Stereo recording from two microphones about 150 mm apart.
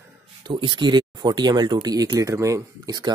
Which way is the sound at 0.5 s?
30° right (ahead or behind).